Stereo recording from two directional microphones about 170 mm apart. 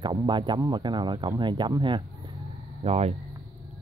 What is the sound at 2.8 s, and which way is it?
Speech, 40° right (ahead or behind).